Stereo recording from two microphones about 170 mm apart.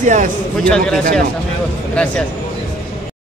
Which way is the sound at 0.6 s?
5° left (ahead or behind).